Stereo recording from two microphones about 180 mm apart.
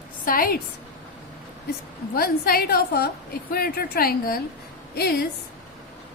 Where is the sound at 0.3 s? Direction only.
55° left (ahead or behind).